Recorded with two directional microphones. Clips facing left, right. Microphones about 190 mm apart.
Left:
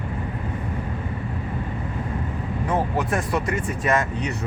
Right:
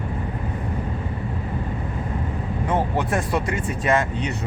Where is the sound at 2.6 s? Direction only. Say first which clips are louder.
Right 1 dB; 30° right (ahead or behind).